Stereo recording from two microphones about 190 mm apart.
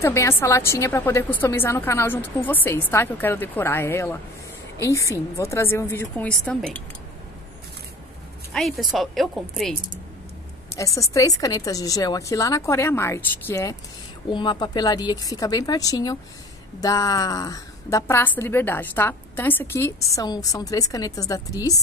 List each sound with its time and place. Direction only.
0.0 s a woman's voice: 15° left (ahead or behind)
8.5 s a woman's voice: centre (ahead or behind)
10.8 s a woman's voice: 15° left (ahead or behind)